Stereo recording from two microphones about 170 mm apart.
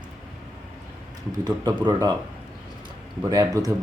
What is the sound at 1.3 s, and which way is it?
Speech, 25° right (ahead or behind).